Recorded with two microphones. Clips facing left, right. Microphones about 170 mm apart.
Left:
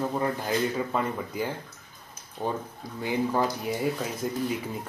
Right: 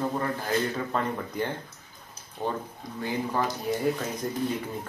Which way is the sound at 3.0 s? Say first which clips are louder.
Left 3 dB; 15° left (ahead or behind).